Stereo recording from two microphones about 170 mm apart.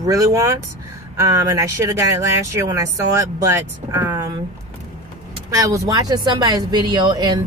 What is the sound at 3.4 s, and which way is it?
Speech, 15° right (ahead or behind).